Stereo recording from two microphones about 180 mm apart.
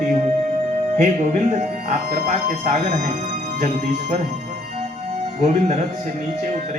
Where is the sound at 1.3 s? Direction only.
40° right (ahead or behind).